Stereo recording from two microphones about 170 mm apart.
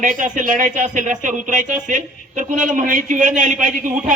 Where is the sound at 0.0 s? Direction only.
50° right (ahead or behind).